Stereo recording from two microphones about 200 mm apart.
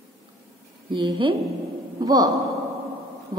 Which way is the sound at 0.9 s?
25° right (ahead or behind).